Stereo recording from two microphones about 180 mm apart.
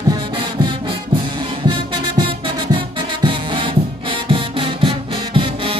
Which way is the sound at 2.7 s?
30° right (ahead or behind).